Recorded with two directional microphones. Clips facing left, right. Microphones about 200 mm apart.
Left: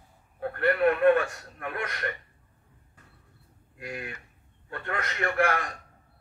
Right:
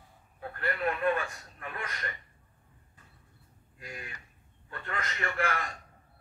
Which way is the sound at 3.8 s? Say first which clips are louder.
Left 7 dB; 65° left (ahead or behind).